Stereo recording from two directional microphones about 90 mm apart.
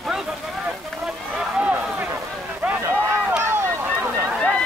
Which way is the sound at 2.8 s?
30° right (ahead or behind).